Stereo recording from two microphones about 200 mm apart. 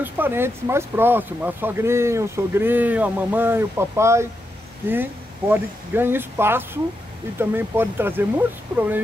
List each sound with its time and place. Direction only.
0.0 s speech: 10° right (ahead or behind)